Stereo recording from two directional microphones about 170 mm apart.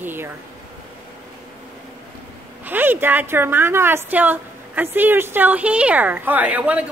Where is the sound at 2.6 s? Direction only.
10° right (ahead or behind).